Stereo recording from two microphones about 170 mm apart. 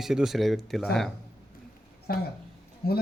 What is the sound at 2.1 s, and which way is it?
Speech, 65° left (ahead or behind).